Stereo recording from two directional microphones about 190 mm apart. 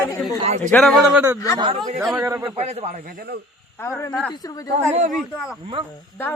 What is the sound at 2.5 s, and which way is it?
Speech, 35° right (ahead or behind).